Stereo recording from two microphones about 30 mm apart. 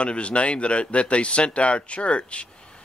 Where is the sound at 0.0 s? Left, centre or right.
Left.